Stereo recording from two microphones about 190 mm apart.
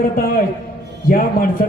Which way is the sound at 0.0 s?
50° left (ahead or behind).